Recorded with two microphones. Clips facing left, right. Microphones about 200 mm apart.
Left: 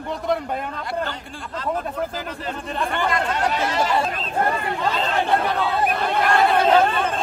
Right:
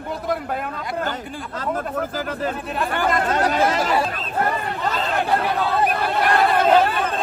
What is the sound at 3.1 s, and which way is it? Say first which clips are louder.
Speech: right 4 dB; 45° right (ahead or behind).